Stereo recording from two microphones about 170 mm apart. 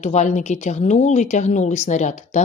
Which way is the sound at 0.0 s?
45° left (ahead or behind).